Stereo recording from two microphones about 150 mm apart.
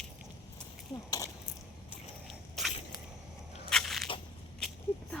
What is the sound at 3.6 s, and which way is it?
Crushing, centre (ahead or behind).